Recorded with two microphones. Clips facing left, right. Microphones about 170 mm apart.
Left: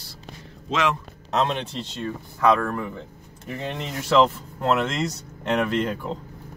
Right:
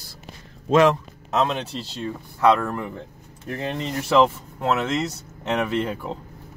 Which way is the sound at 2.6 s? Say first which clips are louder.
Even; 5° right (ahead or behind).